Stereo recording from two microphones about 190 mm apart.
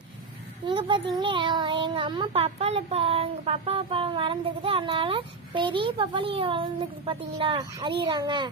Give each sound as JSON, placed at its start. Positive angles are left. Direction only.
{"t": 0.7, "sound": "a child's voice", "side_deg": -25}